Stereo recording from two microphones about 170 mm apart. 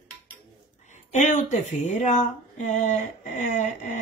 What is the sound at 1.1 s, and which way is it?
Speech, 45° left (ahead or behind).